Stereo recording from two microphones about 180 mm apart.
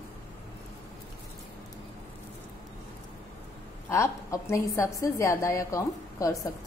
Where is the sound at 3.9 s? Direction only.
15° left (ahead or behind).